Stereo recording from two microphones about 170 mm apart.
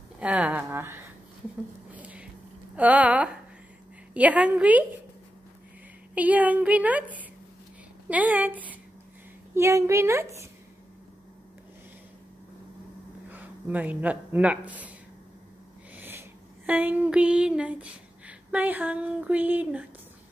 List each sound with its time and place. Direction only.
0.2 s a woman's voice: 5° right (ahead or behind)
2.0 s a sound: 10° right (ahead or behind)
2.7 s a woman's voice: 10° right (ahead or behind)
6.1 s a woman's voice: 10° right (ahead or behind)
13.3 s speech: 10° right (ahead or behind)
16.0 s a sound: 10° right (ahead or behind)